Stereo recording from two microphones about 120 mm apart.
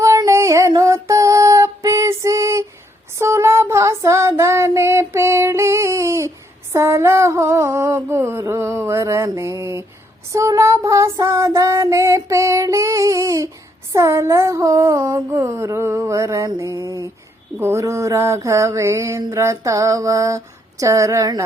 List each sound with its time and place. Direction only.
0.0 s female singing: 25° right (ahead or behind)
6.7 s a sound: 20° right (ahead or behind)
10.3 s child singing: 25° right (ahead or behind)
13.9 s mantra: 25° right (ahead or behind)